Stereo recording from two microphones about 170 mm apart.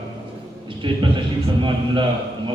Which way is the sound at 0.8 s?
30° right (ahead or behind).